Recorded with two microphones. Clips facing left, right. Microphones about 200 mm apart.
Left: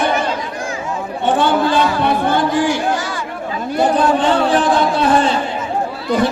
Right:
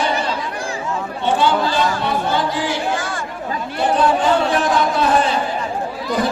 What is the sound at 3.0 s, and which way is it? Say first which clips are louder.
Chatter: left 2 dB; 50° right (ahead or behind).